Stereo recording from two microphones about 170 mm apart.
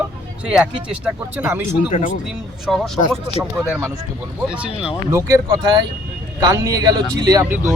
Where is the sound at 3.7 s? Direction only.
10° right (ahead or behind).